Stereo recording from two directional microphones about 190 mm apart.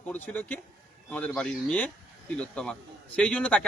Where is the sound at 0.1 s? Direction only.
10° left (ahead or behind).